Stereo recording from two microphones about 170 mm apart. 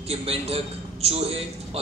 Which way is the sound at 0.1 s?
35° right (ahead or behind).